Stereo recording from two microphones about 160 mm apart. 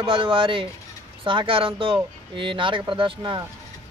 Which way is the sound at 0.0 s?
30° right (ahead or behind).